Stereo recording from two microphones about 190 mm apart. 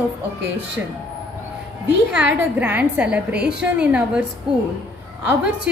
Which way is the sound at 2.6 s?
10° right (ahead or behind).